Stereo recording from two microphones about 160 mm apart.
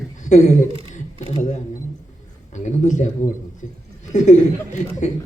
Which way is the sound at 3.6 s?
50° left (ahead or behind).